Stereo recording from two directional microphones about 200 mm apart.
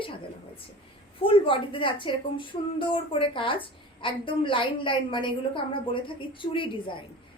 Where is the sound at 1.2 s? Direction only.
25° left (ahead or behind).